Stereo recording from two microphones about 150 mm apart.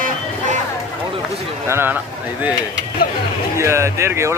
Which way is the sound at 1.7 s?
15° right (ahead or behind).